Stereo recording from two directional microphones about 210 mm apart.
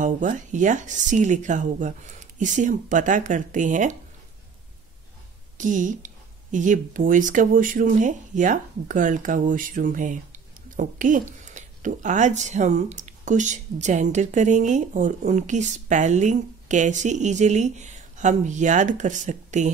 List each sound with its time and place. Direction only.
0.0 s speech: 35° right (ahead or behind)
5.6 s speech: 35° right (ahead or behind)